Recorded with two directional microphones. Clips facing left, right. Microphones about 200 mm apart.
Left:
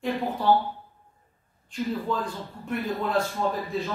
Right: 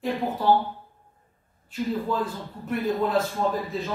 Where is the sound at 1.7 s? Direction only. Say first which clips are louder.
Right 1 dB; 5° right (ahead or behind).